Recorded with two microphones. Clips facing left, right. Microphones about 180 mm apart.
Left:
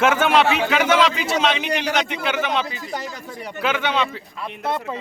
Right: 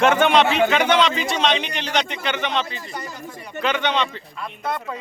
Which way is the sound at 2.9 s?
75° left (ahead or behind).